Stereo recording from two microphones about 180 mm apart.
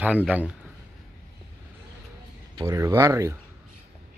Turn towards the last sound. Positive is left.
turn(degrees=-15)  # may be behind; listen again after turning